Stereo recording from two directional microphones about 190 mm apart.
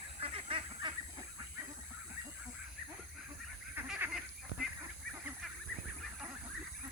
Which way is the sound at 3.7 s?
10° right (ahead or behind).